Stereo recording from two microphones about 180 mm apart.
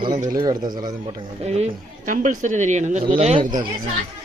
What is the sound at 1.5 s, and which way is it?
A woman's voice, 40° right (ahead or behind).